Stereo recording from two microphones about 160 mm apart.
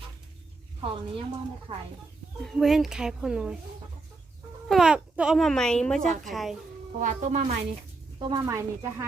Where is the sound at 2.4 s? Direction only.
Centre (ahead or behind).